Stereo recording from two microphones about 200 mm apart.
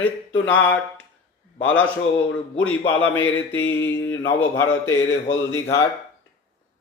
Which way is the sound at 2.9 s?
10° left (ahead or behind).